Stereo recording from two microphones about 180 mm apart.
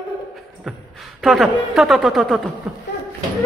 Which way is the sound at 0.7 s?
Centre (ahead or behind).